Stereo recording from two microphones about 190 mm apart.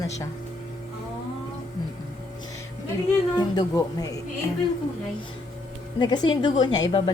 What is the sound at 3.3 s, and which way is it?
Speech, 20° left (ahead or behind).